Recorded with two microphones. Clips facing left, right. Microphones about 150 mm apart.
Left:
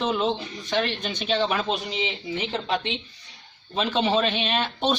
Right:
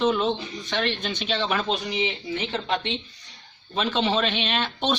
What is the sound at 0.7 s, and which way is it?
Speech, 40° left (ahead or behind).